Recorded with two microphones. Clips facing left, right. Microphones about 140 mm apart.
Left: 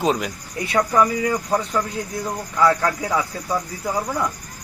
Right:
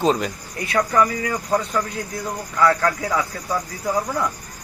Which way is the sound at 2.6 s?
20° left (ahead or behind).